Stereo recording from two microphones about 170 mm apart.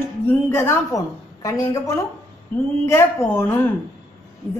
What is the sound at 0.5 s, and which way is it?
A woman's voice, 15° left (ahead or behind).